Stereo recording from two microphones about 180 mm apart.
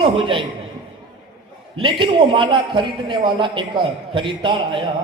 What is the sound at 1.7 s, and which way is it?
Speech, 30° right (ahead or behind).